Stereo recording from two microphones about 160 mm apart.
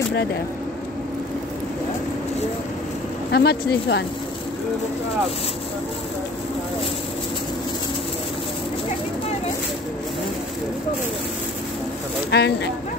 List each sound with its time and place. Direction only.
3.3 s speech: 85° left
12.3 s speech: 90° left